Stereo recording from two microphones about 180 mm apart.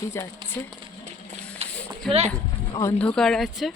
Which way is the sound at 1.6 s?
35° right (ahead or behind).